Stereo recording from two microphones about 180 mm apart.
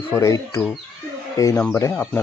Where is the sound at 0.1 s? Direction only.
15° left (ahead or behind).